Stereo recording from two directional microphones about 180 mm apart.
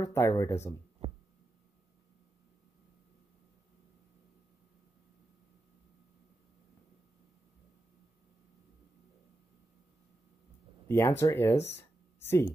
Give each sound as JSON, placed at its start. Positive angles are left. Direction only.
{"t": 0.0, "sound": "speech", "side_deg": 15}
{"t": 10.9, "sound": "speech", "side_deg": 15}
{"t": 11.7, "sound": "a sound", "side_deg": 15}